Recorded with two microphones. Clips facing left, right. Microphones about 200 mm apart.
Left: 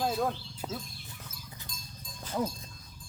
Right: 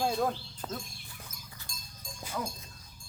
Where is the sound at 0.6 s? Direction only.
15° left (ahead or behind).